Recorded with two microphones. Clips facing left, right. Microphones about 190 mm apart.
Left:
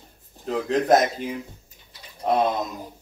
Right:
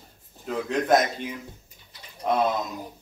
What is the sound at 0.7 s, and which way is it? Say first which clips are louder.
Speech: left 3 dB; 35° left (ahead or behind).